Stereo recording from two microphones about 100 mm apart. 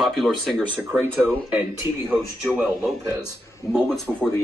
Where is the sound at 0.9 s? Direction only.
20° right (ahead or behind).